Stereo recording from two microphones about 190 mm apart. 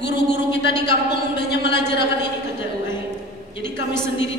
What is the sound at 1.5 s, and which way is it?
Speech, 60° left (ahead or behind).